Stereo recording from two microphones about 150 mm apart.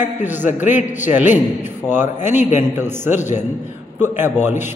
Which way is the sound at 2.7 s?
15° right (ahead or behind).